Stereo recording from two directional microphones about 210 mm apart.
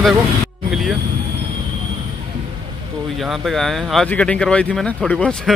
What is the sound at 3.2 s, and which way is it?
Speech, centre (ahead or behind).